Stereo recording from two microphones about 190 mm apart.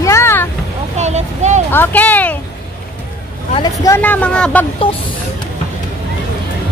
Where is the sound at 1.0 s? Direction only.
35° right (ahead or behind).